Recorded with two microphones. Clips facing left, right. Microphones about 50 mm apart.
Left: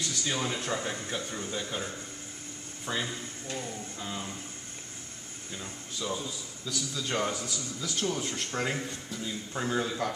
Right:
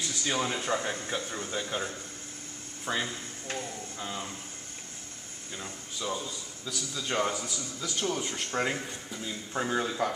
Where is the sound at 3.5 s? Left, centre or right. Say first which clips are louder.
Right 1 dB; right.